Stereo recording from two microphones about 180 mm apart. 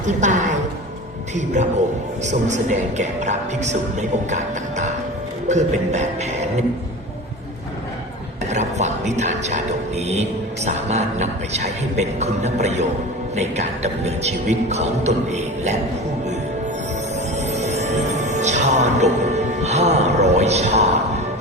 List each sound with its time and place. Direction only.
0.0 s a woman's voice: 45° right (ahead or behind)
5.5 s speech: 40° right (ahead or behind)
8.4 s speech: 40° right (ahead or behind)
10.7 s speech: 35° right (ahead or behind)
17.3 s music: 40° right (ahead or behind)